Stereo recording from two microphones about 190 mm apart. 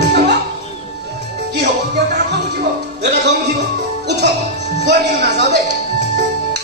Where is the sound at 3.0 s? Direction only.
60° right (ahead or behind).